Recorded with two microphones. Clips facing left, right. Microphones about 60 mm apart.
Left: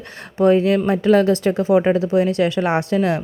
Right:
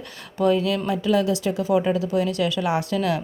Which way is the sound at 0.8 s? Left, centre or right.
Left.